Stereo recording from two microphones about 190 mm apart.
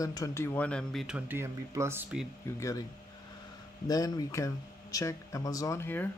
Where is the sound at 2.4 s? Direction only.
15° left (ahead or behind).